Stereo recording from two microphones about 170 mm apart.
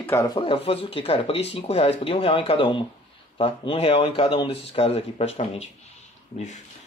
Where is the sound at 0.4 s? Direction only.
35° left (ahead or behind).